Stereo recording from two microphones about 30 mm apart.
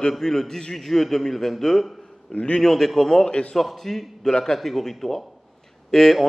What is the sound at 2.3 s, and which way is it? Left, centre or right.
Speech, left.